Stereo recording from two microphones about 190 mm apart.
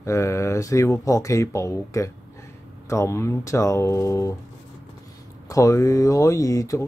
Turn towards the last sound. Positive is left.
turn(degrees=15)  # may be behind; listen again after turning